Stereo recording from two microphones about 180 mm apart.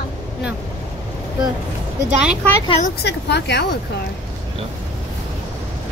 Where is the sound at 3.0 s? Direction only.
70° left (ahead or behind).